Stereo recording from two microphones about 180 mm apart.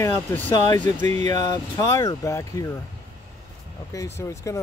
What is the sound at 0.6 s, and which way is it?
Speech, 25° left (ahead or behind).